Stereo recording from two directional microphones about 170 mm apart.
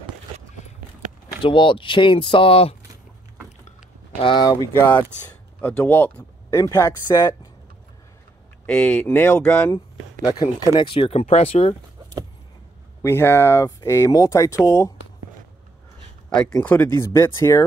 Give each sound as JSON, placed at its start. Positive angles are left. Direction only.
{"t": 1.4, "sound": "speech", "side_deg": 30}
{"t": 4.2, "sound": "speech", "side_deg": 30}
{"t": 4.7, "sound": "speech", "side_deg": 10}
{"t": 6.6, "sound": "speech", "side_deg": 25}
{"t": 8.6, "sound": "speech", "side_deg": 5}
{"t": 10.2, "sound": "speech", "side_deg": 25}
{"t": 10.7, "sound": "speech", "side_deg": 35}
{"t": 13.0, "sound": "speech", "side_deg": 15}
{"t": 16.5, "sound": "speech", "side_deg": 15}